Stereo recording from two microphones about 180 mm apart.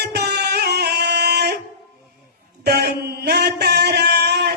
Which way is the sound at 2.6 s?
60° right (ahead or behind).